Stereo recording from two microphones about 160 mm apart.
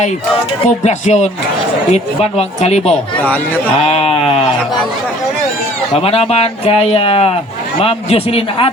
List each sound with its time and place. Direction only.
0.9 s speech: 45° left (ahead or behind)
3.2 s speech: 10° left (ahead or behind)
3.8 s a sound: 35° left (ahead or behind)
5.9 s speech: 40° left (ahead or behind)